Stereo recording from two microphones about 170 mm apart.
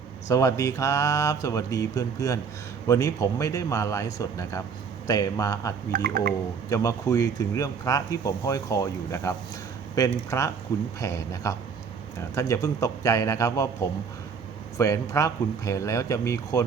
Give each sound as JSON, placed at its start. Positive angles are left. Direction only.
{"t": 0.3, "sound": "speech", "side_deg": 20}
{"t": 5.9, "sound": "speech", "side_deg": -60}
{"t": 6.7, "sound": "speech", "side_deg": 20}
{"t": 14.8, "sound": "speech", "side_deg": 20}